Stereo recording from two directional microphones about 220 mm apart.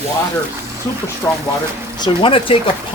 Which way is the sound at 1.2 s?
10° left (ahead or behind).